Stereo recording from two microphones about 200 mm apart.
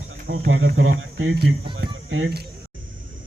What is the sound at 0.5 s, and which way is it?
Speech, 75° right (ahead or behind).